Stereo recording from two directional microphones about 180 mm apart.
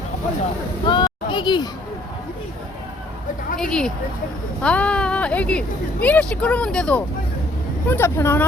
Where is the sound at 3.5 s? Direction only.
5° left (ahead or behind).